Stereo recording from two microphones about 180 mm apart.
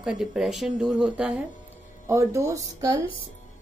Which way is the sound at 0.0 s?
5° right (ahead or behind).